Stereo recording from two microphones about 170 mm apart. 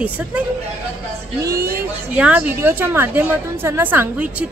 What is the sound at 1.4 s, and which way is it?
Speech, 15° right (ahead or behind).